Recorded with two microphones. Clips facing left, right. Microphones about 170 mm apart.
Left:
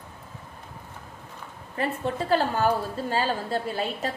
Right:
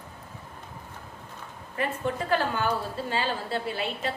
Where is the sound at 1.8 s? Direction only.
35° left (ahead or behind).